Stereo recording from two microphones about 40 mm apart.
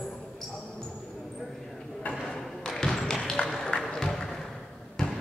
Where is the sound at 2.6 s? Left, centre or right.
Centre.